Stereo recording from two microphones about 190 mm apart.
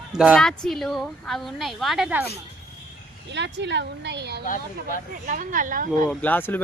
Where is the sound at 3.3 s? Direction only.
65° right (ahead or behind).